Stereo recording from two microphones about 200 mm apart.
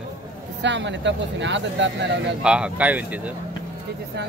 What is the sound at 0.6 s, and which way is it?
Speech, 60° right (ahead or behind).